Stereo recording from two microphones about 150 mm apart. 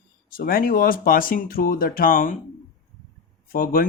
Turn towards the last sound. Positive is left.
turn(degrees=70)  # may be behind; listen again after turning